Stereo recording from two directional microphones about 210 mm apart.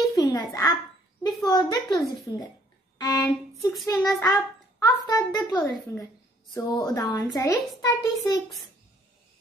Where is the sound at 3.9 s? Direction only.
15° left (ahead or behind).